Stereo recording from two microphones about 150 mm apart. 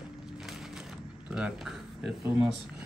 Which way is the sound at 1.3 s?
5° right (ahead or behind).